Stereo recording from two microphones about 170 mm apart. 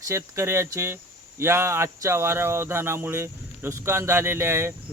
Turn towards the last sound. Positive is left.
turn(degrees=-15)  # may be behind; listen again after turning